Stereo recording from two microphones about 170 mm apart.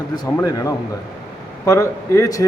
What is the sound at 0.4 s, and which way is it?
A man's voice, 20° left (ahead or behind).